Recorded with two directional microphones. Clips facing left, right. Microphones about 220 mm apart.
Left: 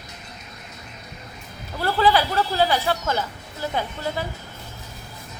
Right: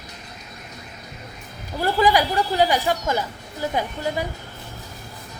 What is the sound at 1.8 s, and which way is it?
Speech, 15° right (ahead or behind).